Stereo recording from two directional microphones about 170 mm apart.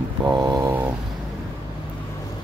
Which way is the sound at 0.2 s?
20° right (ahead or behind).